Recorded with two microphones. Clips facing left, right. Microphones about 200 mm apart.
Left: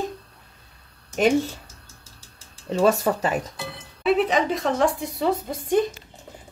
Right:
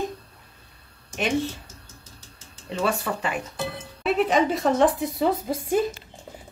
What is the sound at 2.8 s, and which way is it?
Speech, 40° left (ahead or behind).